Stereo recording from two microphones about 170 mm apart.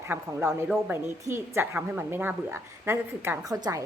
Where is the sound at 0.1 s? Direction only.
15° right (ahead or behind).